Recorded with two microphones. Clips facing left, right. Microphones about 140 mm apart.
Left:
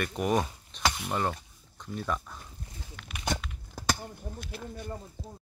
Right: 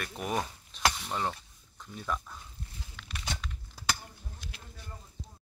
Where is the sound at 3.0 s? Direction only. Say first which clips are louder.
Left 2 dB; 5° left (ahead or behind).